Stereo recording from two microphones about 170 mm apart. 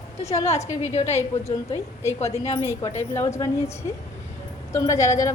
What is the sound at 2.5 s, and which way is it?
Speech, 15° left (ahead or behind).